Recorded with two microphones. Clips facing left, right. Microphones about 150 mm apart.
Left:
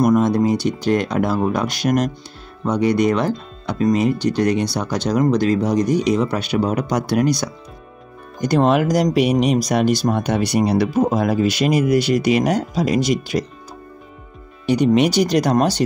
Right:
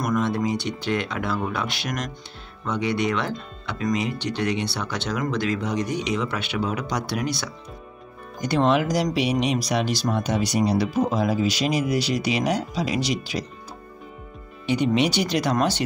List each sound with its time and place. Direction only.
0.0 s speech: 40° left (ahead or behind)
14.7 s speech: 45° left (ahead or behind)